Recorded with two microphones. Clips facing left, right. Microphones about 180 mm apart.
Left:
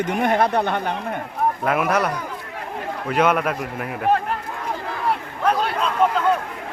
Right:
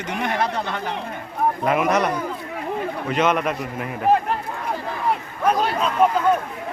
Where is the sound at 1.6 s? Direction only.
Centre (ahead or behind).